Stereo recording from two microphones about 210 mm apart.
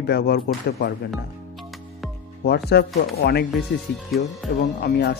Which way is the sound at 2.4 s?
50° left (ahead or behind).